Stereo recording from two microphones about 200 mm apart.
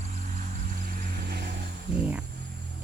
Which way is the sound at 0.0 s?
40° right (ahead or behind).